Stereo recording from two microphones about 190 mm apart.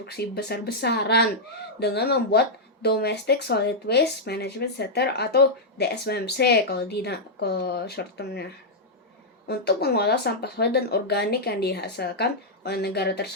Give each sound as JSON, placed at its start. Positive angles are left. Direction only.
{"t": 0.0, "sound": "speech", "side_deg": 55}
{"t": 9.5, "sound": "speech", "side_deg": 55}